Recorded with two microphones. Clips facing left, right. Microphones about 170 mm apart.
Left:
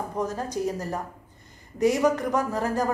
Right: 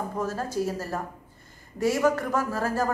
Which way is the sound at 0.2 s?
20° left (ahead or behind).